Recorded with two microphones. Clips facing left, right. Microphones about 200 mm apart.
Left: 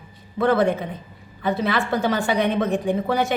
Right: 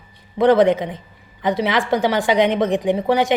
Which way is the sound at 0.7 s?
90° right.